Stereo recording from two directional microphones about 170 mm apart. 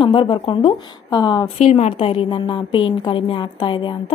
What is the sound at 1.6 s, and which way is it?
A woman's voice, 40° left (ahead or behind).